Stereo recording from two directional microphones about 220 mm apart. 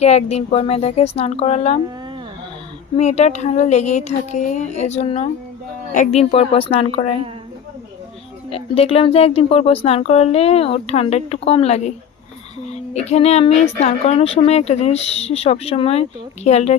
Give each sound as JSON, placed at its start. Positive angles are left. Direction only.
{"t": 0.0, "sound": "a woman's voice", "side_deg": 30}
{"t": 3.0, "sound": "a woman's voice", "side_deg": 30}
{"t": 8.4, "sound": "a woman's voice", "side_deg": 25}
{"t": 12.9, "sound": "a woman's voice", "side_deg": 30}